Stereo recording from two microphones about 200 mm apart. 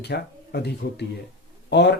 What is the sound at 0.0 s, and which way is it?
Speech, 55° left (ahead or behind).